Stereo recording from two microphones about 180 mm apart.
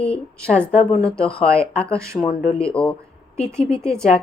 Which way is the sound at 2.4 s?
30° left (ahead or behind).